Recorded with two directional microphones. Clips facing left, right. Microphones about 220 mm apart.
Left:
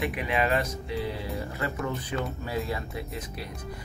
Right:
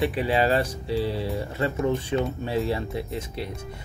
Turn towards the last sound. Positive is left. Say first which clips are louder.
# right 5 dB
turn(degrees=-30)  # may be behind; listen again after turning